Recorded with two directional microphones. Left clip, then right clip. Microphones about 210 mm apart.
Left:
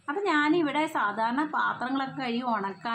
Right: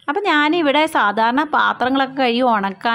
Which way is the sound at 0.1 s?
40° right (ahead or behind).